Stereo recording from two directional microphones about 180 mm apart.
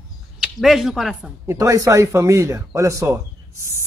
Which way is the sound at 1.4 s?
20° right (ahead or behind).